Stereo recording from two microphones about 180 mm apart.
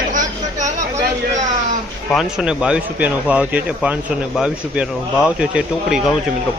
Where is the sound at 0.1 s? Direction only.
45° right (ahead or behind).